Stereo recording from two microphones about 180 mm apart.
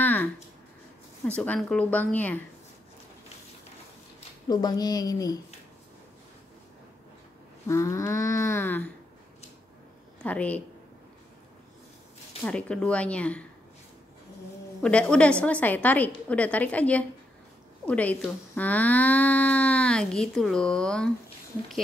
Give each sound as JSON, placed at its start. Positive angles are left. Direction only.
{"t": 0.0, "sound": "a sound", "side_deg": 10}
{"t": 1.2, "sound": "speech", "side_deg": 10}
{"t": 4.5, "sound": "a woman's voice", "side_deg": 20}
{"t": 7.6, "sound": "speech", "side_deg": 15}
{"t": 10.2, "sound": "speech", "side_deg": 10}
{"t": 12.4, "sound": "speech", "side_deg": 5}
{"t": 14.8, "sound": "speech", "side_deg": 5}